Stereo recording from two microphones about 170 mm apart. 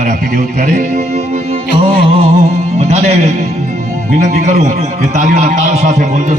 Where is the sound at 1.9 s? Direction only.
30° right (ahead or behind).